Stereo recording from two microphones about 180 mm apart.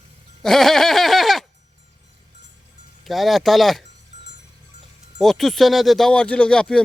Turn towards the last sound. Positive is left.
turn(degrees=5)  # may be behind; listen again after turning